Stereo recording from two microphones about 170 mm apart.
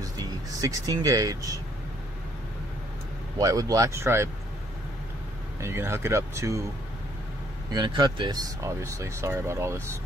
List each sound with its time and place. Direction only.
0.0 s speech: 20° right (ahead or behind)
3.3 s speech: 20° right (ahead or behind)
5.6 s speech: 15° right (ahead or behind)
7.7 s speech: 25° right (ahead or behind)